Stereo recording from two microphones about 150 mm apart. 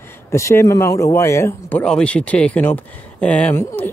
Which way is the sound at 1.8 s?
5° left (ahead or behind).